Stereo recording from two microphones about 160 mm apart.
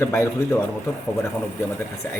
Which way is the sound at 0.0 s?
15° left (ahead or behind).